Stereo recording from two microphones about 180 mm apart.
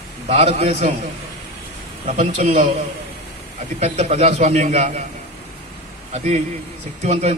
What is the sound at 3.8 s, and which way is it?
A man's voice, 35° right (ahead or behind).